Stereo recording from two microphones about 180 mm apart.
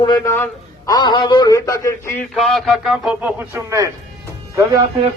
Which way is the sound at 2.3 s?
Centre (ahead or behind).